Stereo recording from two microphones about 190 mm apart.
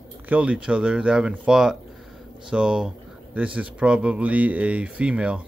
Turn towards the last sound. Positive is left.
turn(degrees=-5)  # may be behind; listen again after turning